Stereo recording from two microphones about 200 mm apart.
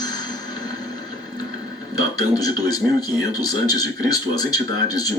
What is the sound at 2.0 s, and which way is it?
Speech, 20° left (ahead or behind).